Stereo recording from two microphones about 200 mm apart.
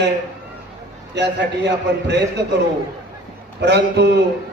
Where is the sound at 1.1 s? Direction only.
60° right (ahead or behind).